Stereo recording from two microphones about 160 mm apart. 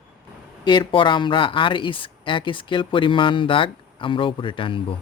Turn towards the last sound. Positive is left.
turn(degrees=30)  # may be behind; listen again after turning